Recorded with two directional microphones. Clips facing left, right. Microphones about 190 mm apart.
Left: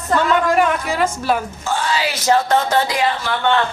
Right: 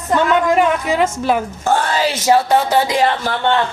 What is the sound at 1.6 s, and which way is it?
Speech, 55° right (ahead or behind).